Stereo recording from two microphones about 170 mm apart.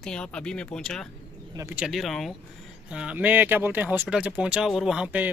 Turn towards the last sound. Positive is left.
turn(degrees=-10)  # may be behind; listen again after turning